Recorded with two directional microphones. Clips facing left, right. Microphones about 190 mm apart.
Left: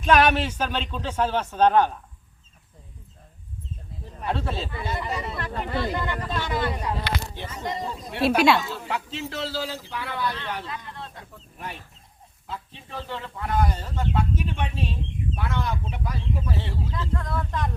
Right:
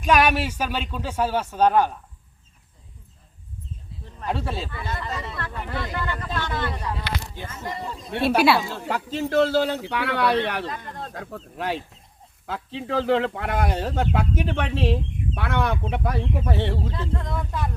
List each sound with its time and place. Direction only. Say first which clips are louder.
0.0 s a man's voice: even; 10° right (ahead or behind)
4.3 s a man's voice: even; 10° right (ahead or behind)
4.7 s speech: left 2 dB; 15° left (ahead or behind)
5.3 s speech: left 2 dB; 25° left (ahead or behind)
8.2 s speech: even; 5° right (ahead or behind)
8.7 s speech: right 3 dB; 50° right (ahead or behind); by 10.7 s 70° right (ahead or behind)
10.7 s speech: right 3 dB; 45° right (ahead or behind)
11.1 s speech: right 10 dB; 90° right
15.4 s speech: right 6 dB; 65° right (ahead or behind)
17.2 s speech: even; 20° right (ahead or behind)